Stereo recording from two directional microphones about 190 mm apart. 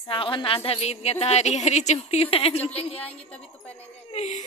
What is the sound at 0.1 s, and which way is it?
A woman's voice, 25° left (ahead or behind).